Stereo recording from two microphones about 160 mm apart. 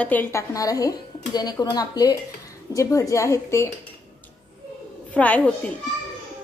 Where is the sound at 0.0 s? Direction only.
10° left (ahead or behind).